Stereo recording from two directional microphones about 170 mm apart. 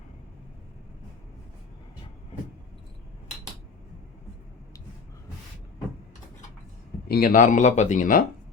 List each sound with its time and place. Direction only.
7.1 s speech: 60° left (ahead or behind)